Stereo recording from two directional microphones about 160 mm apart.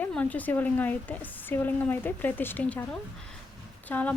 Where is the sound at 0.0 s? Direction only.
10° left (ahead or behind).